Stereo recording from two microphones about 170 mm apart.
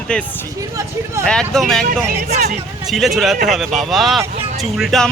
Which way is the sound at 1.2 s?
5° left (ahead or behind).